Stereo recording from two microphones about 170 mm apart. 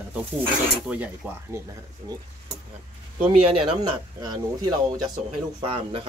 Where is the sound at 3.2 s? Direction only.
35° right (ahead or behind).